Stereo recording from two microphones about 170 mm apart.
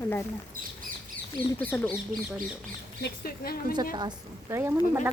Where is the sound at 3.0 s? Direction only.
65° left (ahead or behind).